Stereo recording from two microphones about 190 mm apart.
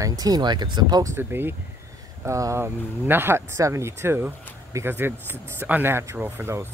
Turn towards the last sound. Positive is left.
turn(degrees=-15)  # may be behind; listen again after turning